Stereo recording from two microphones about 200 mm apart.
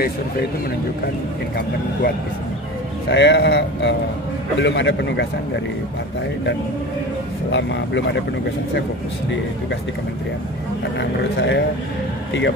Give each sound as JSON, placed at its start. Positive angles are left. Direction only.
{"t": 3.1, "sound": "speech", "side_deg": 60}
{"t": 7.5, "sound": "speech", "side_deg": 65}
{"t": 11.0, "sound": "speech", "side_deg": 60}